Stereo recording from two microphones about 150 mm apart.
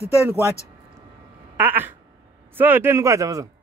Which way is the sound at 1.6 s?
15° right (ahead or behind).